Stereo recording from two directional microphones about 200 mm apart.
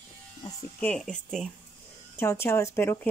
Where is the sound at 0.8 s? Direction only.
5° left (ahead or behind).